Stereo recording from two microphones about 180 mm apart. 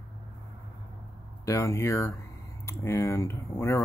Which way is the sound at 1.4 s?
15° left (ahead or behind).